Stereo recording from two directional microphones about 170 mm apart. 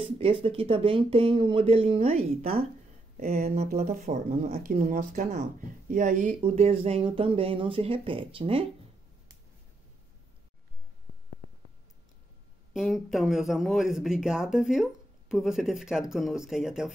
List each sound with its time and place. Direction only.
0.0 s speech: 35° right (ahead or behind)
12.7 s speech: centre (ahead or behind)